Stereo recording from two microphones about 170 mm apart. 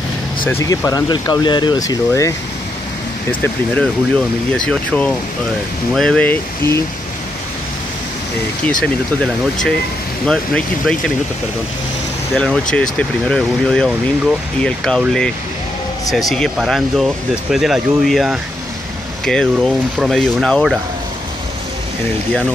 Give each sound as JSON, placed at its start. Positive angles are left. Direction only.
{"t": 0.5, "sound": "speech", "side_deg": 15}
{"t": 4.6, "sound": "speech", "side_deg": 5}
{"t": 8.6, "sound": "speech", "side_deg": 5}
{"t": 12.4, "sound": "speech", "side_deg": 5}